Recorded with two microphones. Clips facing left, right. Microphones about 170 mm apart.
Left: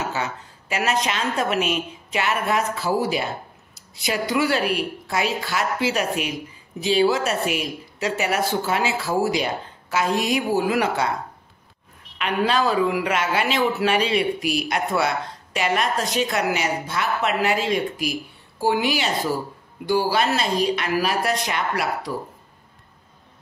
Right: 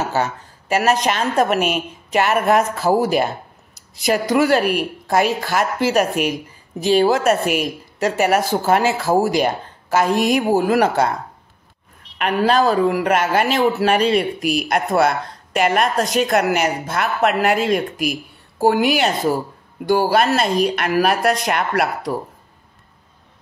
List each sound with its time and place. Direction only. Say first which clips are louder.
0.1 s a man's voice: right 6 dB; 40° right (ahead or behind)
12.2 s a man's voice: right 5 dB; 45° right (ahead or behind)